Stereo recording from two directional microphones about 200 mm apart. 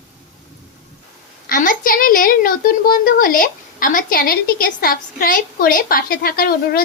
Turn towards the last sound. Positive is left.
turn(degrees=50)  # may be behind; listen again after turning